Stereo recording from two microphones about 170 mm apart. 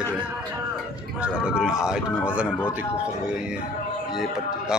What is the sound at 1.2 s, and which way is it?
Speech, 5° right (ahead or behind).